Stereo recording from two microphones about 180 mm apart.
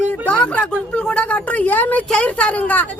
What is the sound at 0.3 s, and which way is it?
Speech, 5° left (ahead or behind).